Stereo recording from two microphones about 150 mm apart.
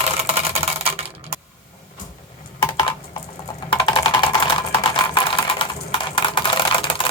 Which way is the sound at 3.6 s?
35° left (ahead or behind).